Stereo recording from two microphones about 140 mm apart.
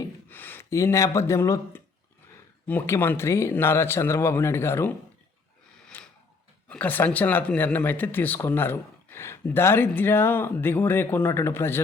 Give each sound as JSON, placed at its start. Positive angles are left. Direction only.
{"t": 0.3, "sound": "speech", "side_deg": 15}
{"t": 5.9, "sound": "a sound", "side_deg": 10}
{"t": 6.7, "sound": "speech", "side_deg": 10}